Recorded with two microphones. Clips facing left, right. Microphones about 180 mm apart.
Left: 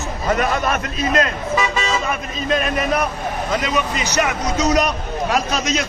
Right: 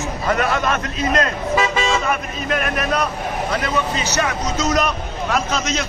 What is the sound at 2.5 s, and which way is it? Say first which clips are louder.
A man's voice: left 2 dB; 20° left (ahead or behind).